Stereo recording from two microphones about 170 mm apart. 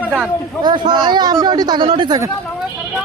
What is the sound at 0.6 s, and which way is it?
Speech, 25° right (ahead or behind).